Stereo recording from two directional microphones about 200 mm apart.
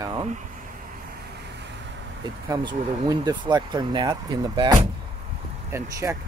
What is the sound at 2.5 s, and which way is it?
Speech, 20° right (ahead or behind).